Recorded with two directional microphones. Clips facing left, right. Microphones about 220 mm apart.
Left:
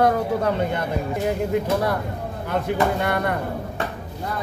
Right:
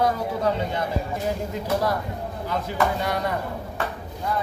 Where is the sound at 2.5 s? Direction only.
60° left (ahead or behind).